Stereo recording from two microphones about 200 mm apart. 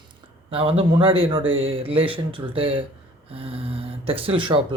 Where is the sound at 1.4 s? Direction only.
80° right.